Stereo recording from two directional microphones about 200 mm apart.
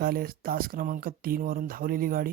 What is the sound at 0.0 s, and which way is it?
Speech, 45° right (ahead or behind).